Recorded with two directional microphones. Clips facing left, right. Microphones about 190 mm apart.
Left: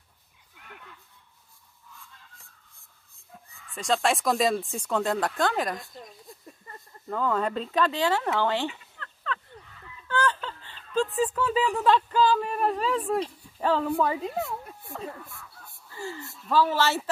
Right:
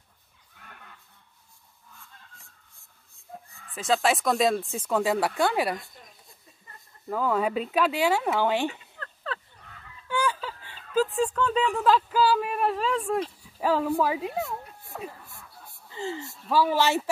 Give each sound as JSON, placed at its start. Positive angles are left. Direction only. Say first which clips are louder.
{"t": 3.7, "sound": "speech", "louder": "right 1 dB", "side_deg": -5}
{"t": 7.1, "sound": "speech", "louder": "right 1 dB", "side_deg": -5}
{"t": 9.0, "sound": "a sound", "louder": "left 1 dB", "side_deg": -35}
{"t": 10.0, "sound": "speech", "louder": "left 1 dB", "side_deg": -10}
{"t": 15.9, "sound": "a sound", "louder": "right 4 dB", "side_deg": -20}
{"t": 16.4, "sound": "speech", "louder": "right 1 dB", "side_deg": -10}